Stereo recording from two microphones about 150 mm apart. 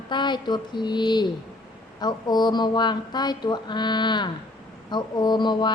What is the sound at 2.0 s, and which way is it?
A woman's voice, 30° left (ahead or behind).